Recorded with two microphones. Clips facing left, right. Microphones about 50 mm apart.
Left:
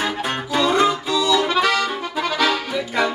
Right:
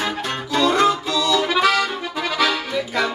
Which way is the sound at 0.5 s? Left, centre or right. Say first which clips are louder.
Right 1 dB; centre.